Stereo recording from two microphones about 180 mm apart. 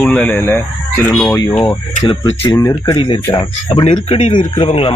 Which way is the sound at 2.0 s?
25° left (ahead or behind).